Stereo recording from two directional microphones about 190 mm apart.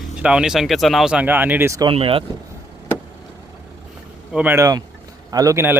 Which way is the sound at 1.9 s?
30° right (ahead or behind).